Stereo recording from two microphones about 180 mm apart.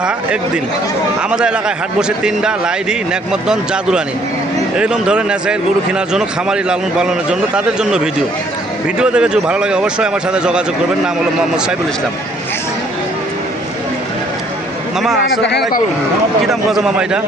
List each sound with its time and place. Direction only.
0.0 s a man's voice: 5° right (ahead or behind)
15.4 s speech: 75° left (ahead or behind)
16.5 s a man's voice: centre (ahead or behind)